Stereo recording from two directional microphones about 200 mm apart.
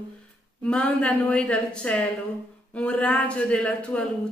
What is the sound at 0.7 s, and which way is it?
A woman's voice, 5° left (ahead or behind).